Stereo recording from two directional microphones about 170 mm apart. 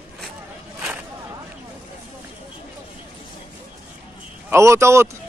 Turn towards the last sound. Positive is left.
turn(degrees=-15)  # may be behind; listen again after turning